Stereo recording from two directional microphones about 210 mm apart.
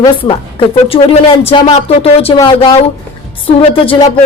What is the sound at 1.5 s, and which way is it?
Speech, 30° left (ahead or behind).